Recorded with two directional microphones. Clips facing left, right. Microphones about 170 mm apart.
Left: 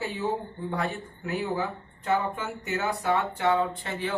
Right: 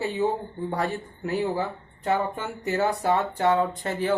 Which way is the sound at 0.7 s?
35° right (ahead or behind).